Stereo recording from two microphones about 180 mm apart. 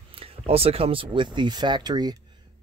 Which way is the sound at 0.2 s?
35° right (ahead or behind).